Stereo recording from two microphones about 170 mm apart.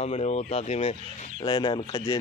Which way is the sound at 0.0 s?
40° left (ahead or behind).